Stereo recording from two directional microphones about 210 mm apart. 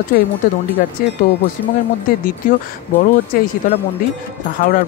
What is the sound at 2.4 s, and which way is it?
Speech, 40° left (ahead or behind).